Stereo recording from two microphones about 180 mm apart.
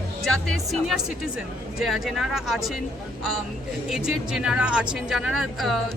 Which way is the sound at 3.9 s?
Centre (ahead or behind).